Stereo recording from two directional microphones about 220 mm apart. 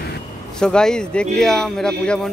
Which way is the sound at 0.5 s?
5° left (ahead or behind).